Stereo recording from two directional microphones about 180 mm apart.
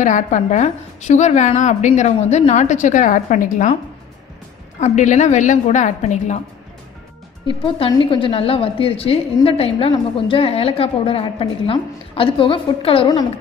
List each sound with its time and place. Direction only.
0.0 s a woman's voice: 45° left (ahead or behind)
4.7 s a woman's voice: 40° left (ahead or behind)
7.6 s a woman's voice: 30° left (ahead or behind)